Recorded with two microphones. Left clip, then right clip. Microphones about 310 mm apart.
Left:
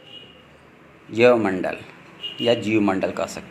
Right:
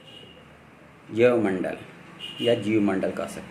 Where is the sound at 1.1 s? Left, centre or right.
Centre.